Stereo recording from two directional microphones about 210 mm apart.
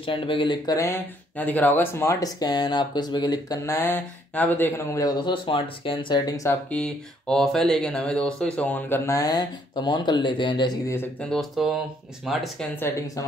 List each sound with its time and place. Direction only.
0.0 s speech: 25° left (ahead or behind)
11.0 s speech: 5° left (ahead or behind)
12.8 s speech: 15° left (ahead or behind)